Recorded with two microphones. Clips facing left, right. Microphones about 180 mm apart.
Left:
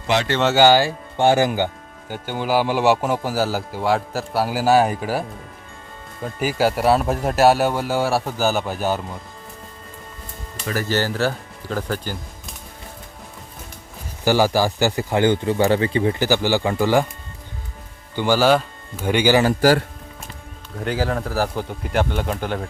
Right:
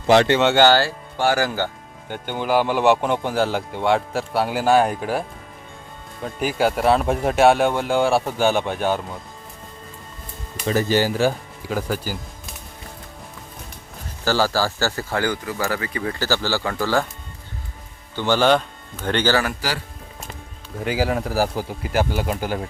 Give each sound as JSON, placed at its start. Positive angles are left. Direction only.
{"t": 0.3, "sound": "speech", "side_deg": 5}
{"t": 2.0, "sound": "speech", "side_deg": 5}
{"t": 6.2, "sound": "speech", "side_deg": 5}
{"t": 10.7, "sound": "speech", "side_deg": -20}
{"t": 14.3, "sound": "speech", "side_deg": 15}
{"t": 18.2, "sound": "speech", "side_deg": 10}
{"t": 19.6, "sound": "speech", "side_deg": 50}
{"t": 20.7, "sound": "speech", "side_deg": -5}